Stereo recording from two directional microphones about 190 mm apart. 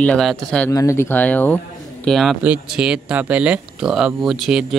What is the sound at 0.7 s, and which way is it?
Speech, 15° left (ahead or behind).